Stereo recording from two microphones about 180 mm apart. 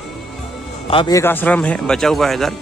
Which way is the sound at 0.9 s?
25° left (ahead or behind).